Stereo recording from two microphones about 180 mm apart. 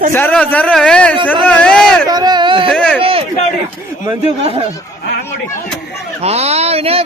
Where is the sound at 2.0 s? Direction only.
20° right (ahead or behind).